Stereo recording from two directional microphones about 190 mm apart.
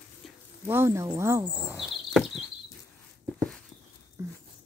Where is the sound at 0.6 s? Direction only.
15° right (ahead or behind).